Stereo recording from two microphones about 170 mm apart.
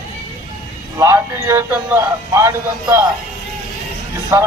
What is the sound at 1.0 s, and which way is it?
Speech, 15° right (ahead or behind).